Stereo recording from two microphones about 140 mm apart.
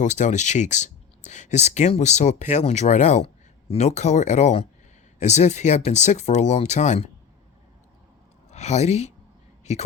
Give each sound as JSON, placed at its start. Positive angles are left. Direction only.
{"t": 0.0, "sound": "speech", "side_deg": 60}
{"t": 8.4, "sound": "speech", "side_deg": 55}